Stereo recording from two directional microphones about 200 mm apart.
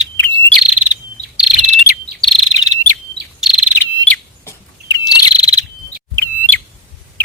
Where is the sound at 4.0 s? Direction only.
10° left (ahead or behind).